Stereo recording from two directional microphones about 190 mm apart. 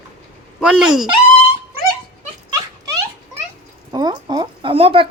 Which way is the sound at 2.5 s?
20° right (ahead or behind).